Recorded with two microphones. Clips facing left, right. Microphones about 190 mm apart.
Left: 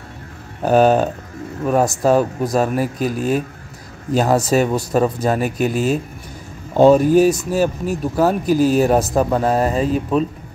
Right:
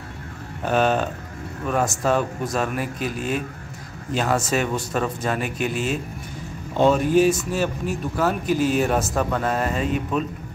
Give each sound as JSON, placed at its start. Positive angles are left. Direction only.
{"t": 0.7, "sound": "speech", "side_deg": 40}